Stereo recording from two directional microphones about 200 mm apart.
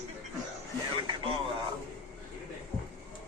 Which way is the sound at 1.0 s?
25° right (ahead or behind).